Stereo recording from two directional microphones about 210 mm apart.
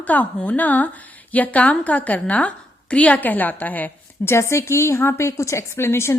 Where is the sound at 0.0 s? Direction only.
5° left (ahead or behind).